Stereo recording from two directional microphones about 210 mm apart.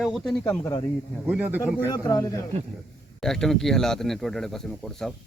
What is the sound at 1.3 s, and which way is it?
Speech, 10° right (ahead or behind).